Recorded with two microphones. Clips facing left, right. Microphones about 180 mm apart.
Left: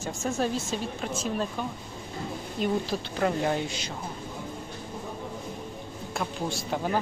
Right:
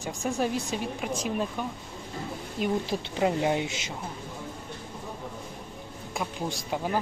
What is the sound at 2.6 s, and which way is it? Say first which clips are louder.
A woman's voice: even; 10° right (ahead or behind).